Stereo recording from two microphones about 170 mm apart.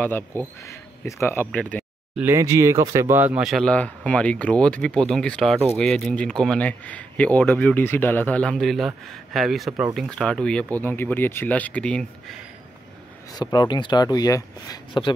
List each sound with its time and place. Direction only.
0.4 s speech: 15° left (ahead or behind)
2.1 s speech: 15° right (ahead or behind); by 12.4 s 5° left (ahead or behind)
13.3 s speech: 25° left (ahead or behind)